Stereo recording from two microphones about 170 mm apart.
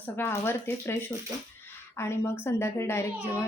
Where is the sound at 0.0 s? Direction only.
15° left (ahead or behind).